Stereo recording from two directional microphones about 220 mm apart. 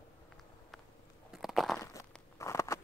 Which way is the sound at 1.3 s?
Centre (ahead or behind).